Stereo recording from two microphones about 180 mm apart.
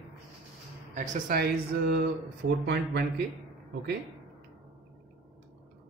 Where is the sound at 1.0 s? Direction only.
45° right (ahead or behind); by 3.0 s 70° right (ahead or behind).